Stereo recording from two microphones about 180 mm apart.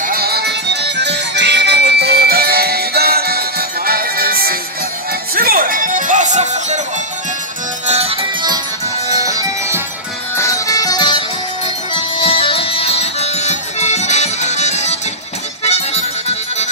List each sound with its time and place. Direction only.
0.0 s music: 55° right (ahead or behind); by 6.8 s 40° right (ahead or behind)
7.8 s music: 35° right (ahead or behind); by 9.8 s 20° right (ahead or behind)
10.3 s music: 15° left (ahead or behind); by 16.6 s 35° left (ahead or behind)